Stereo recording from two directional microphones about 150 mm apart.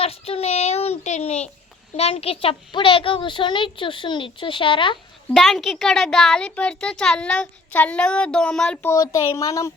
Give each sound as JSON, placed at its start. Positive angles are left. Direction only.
{"t": 0.0, "sound": "a child's voice", "side_deg": 40}
{"t": 5.3, "sound": "a child's voice", "side_deg": 0}
{"t": 8.9, "sound": "speech", "side_deg": 20}